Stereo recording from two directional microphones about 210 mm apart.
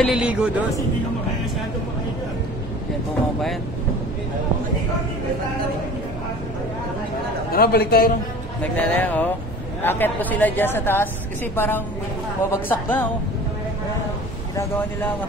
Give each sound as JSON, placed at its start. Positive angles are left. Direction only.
{"t": 0.0, "sound": "speech", "side_deg": -5}
{"t": 7.5, "sound": "a man's voice", "side_deg": 45}
{"t": 8.7, "sound": "speech", "side_deg": 5}